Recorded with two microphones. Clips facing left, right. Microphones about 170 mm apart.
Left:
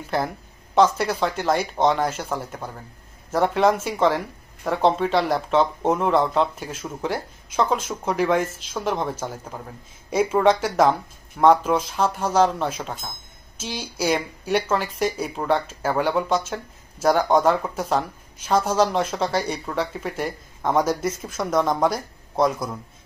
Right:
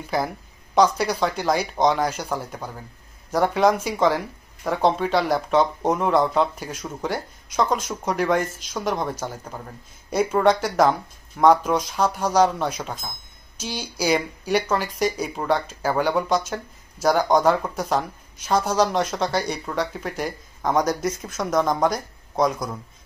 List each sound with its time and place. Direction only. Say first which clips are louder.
0.7 s speech: even; 5° left (ahead or behind)